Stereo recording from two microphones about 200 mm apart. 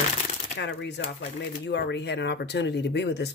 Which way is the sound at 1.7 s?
60° left (ahead or behind).